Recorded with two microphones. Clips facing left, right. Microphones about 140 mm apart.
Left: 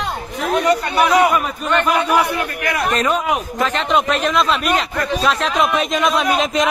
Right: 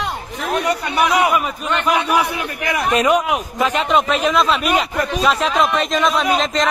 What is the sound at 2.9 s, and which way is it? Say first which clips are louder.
A man's voice: right 6 dB; 10° right (ahead or behind).